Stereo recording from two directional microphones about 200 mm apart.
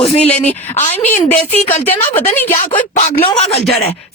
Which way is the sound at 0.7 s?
35° left (ahead or behind).